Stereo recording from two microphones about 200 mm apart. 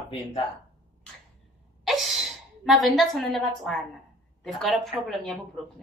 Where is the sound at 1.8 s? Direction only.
Centre (ahead or behind).